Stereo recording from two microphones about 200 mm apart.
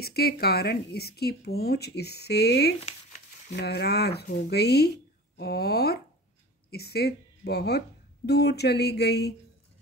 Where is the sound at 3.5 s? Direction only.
55° left (ahead or behind).